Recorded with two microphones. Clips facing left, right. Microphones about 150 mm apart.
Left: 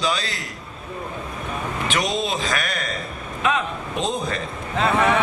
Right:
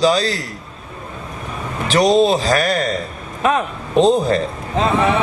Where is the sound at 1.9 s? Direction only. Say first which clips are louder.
Right 12 dB; 35° right (ahead or behind).